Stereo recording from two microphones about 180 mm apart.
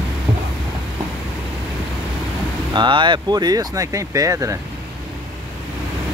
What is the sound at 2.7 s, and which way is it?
Speech, 25° right (ahead or behind).